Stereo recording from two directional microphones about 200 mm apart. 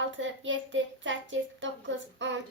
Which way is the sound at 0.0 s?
70° right (ahead or behind).